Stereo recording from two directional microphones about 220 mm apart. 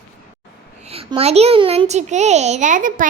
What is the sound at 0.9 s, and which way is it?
A child's voice, 25° right (ahead or behind).